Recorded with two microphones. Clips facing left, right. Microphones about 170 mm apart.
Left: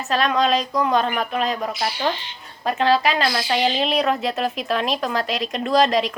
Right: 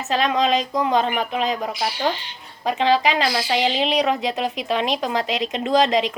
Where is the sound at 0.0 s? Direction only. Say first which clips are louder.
Even; 20° right (ahead or behind).